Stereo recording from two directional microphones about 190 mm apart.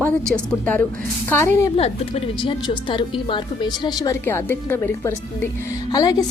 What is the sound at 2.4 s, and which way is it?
A woman's voice, 25° left (ahead or behind).